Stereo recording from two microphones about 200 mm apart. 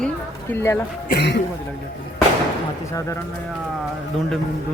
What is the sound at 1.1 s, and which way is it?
Speech, 55° left (ahead or behind).